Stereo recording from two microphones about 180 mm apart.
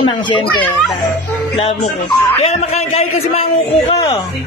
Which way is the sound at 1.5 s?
35° left (ahead or behind).